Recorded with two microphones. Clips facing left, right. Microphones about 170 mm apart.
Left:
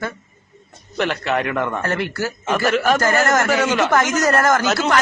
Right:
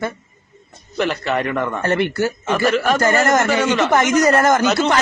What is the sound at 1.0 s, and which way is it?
Speech, centre (ahead or behind).